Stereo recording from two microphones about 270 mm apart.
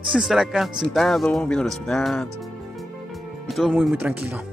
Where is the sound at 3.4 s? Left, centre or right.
Centre.